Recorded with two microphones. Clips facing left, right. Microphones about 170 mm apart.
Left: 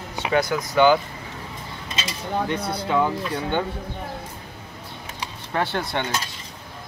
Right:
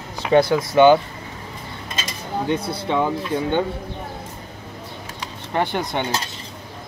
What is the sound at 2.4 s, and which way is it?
Speech, 30° right (ahead or behind).